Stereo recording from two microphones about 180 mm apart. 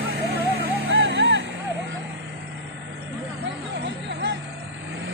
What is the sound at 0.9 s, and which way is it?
Music, 90° right.